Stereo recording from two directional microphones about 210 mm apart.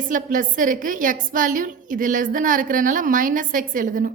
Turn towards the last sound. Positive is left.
turn(degrees=-40)  # may be behind; listen again after turning